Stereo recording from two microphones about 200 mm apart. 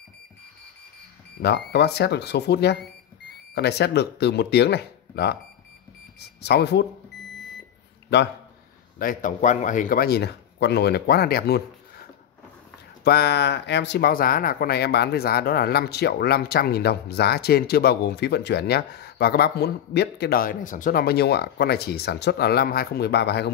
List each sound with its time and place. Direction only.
1.4 s speech: 55° left (ahead or behind)
8.9 s speech: 40° left (ahead or behind)
13.0 s speech: 55° left (ahead or behind)